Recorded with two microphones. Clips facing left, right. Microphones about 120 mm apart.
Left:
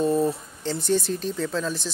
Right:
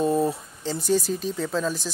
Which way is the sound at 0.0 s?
15° right (ahead or behind).